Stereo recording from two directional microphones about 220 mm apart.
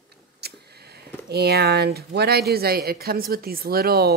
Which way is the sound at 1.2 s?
45° right (ahead or behind).